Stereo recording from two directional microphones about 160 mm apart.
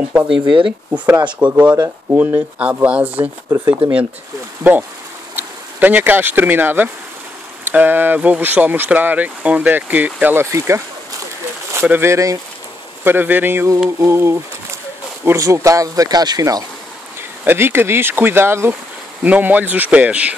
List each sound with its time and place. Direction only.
0.1 s speech: 10° right (ahead or behind)
5.3 s speech: 10° right (ahead or behind)